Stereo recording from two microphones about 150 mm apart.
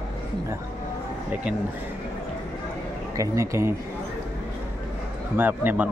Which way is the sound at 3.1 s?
20° right (ahead or behind).